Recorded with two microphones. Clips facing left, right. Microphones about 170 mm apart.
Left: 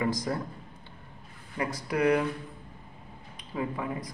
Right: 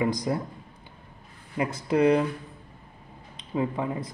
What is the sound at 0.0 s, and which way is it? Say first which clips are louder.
Speech: right 3 dB; 20° right (ahead or behind).